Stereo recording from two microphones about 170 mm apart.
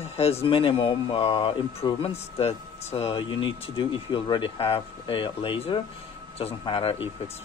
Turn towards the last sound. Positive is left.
turn(degrees=30)  # may be behind; listen again after turning